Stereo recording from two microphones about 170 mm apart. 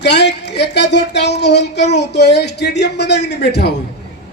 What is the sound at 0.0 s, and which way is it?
Speech, 80° left.